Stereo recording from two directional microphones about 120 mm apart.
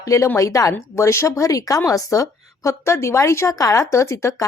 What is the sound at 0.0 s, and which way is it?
A woman's voice, 25° left (ahead or behind).